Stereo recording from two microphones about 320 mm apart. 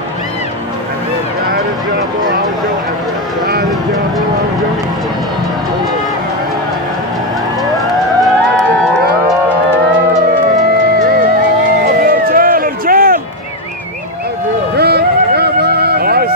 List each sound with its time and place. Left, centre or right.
7.7 s music: centre
11.8 s music: right
14.8 s music: right